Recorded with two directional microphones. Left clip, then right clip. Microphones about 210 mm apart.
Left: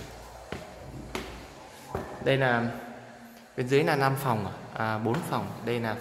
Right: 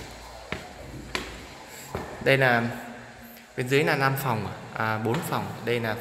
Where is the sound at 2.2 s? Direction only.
Centre (ahead or behind).